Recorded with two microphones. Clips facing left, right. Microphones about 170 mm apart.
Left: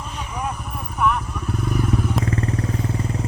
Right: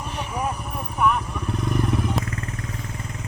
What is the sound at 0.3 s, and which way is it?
Vehicle, centre (ahead or behind).